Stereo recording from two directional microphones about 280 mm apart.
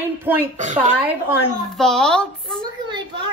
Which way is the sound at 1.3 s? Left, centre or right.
Centre.